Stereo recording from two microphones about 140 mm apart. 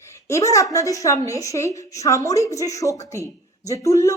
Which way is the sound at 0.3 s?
20° left (ahead or behind).